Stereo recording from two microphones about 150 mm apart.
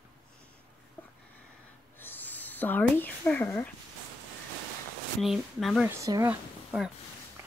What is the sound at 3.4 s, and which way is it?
Speech, 15° left (ahead or behind).